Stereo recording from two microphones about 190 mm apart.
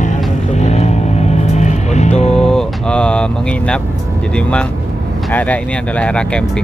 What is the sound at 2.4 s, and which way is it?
Speech, 5° left (ahead or behind).